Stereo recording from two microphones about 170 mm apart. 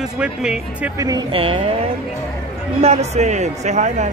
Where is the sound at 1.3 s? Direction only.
35° right (ahead or behind).